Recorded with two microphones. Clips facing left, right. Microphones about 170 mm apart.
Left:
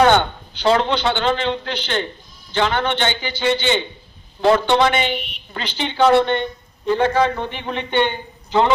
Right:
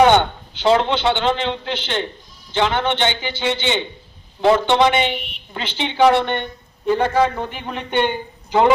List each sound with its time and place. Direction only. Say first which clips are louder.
0.0 s a man's voice: right 1 dB; 20° right (ahead or behind)